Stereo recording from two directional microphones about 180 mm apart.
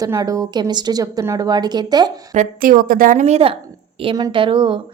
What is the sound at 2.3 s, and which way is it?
A woman's voice, 45° right (ahead or behind).